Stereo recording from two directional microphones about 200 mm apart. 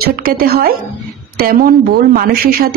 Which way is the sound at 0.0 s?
45° right (ahead or behind).